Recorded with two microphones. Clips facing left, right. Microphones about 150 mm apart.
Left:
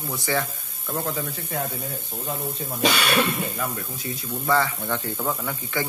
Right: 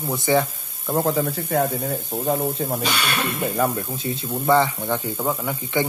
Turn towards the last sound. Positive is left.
turn(degrees=-15)  # may be behind; listen again after turning